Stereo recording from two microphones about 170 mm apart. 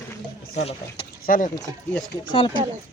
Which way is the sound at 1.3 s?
50° left (ahead or behind).